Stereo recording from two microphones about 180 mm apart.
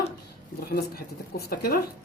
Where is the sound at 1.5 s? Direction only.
55° left (ahead or behind).